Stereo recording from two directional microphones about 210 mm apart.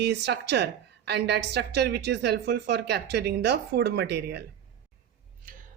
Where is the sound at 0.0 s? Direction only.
55° right (ahead or behind).